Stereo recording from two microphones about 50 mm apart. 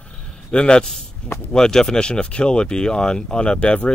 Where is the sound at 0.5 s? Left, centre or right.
Centre.